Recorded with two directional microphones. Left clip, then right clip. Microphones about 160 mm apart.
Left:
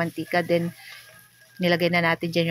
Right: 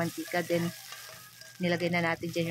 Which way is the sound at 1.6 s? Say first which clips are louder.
Left 8 dB; 25° left (ahead or behind).